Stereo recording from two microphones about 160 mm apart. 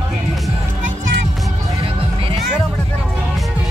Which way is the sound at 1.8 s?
35° right (ahead or behind).